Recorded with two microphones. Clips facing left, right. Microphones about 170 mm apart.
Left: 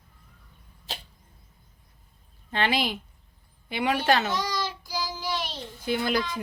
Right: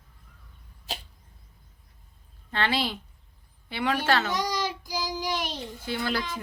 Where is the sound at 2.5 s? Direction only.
15° left (ahead or behind).